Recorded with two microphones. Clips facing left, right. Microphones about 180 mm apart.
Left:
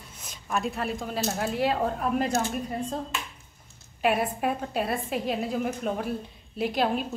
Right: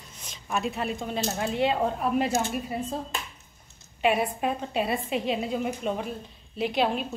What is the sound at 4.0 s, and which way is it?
A woman's voice, centre (ahead or behind).